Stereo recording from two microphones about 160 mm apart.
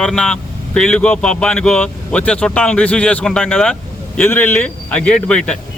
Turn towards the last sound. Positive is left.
turn(degrees=5)  # may be behind; listen again after turning